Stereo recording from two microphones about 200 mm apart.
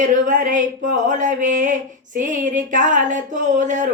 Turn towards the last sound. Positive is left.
turn(degrees=-40)  # may be behind; listen again after turning